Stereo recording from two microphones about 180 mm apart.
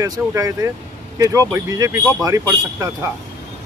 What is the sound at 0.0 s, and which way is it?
Speech, 20° right (ahead or behind).